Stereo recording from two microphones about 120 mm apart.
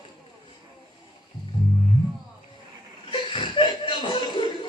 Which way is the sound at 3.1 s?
45° left (ahead or behind).